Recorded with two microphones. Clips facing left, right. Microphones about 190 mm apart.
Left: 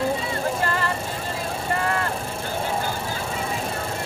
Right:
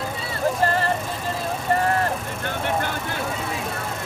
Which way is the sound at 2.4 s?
65° right (ahead or behind).